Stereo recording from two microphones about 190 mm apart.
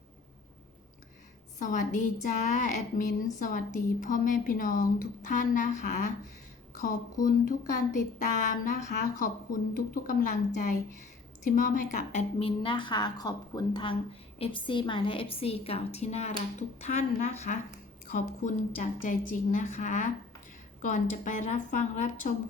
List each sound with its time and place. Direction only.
1.5 s a woman's voice: 40° left (ahead or behind)